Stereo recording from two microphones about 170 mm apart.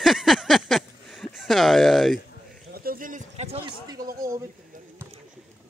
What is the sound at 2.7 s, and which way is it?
Speech, 60° right (ahead or behind).